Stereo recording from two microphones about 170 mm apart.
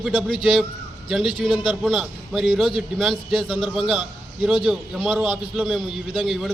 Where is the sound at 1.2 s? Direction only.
30° left (ahead or behind).